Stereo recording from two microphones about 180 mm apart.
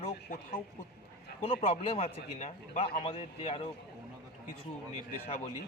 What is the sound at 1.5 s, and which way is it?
A man's voice, 30° left (ahead or behind).